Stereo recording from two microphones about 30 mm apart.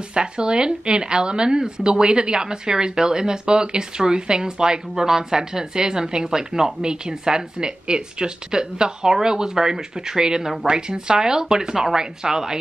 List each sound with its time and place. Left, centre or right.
0.1 s speech: right